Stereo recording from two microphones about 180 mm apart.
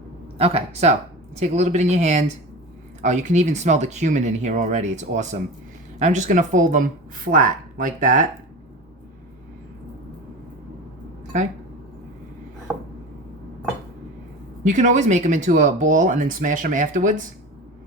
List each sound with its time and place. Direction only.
0.3 s speech: 35° right (ahead or behind)
14.6 s speech: 45° right (ahead or behind)